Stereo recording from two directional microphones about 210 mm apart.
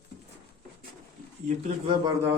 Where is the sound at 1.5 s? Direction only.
30° right (ahead or behind).